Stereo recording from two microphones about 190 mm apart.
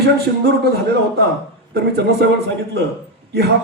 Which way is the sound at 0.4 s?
60° right (ahead or behind).